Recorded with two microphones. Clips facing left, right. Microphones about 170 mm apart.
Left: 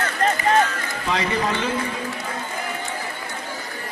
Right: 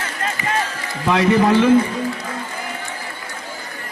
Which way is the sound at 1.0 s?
55° right (ahead or behind).